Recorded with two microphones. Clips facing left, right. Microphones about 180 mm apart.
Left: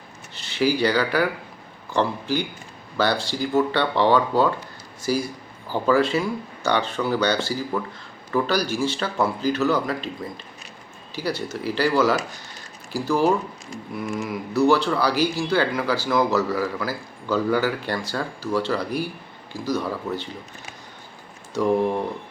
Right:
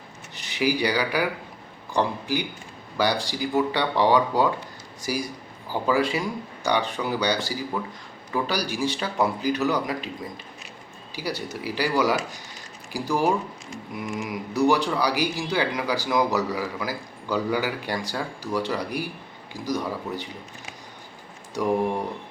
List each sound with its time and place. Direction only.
0.3 s speech: 15° right (ahead or behind)
11.1 s speech: 15° right (ahead or behind)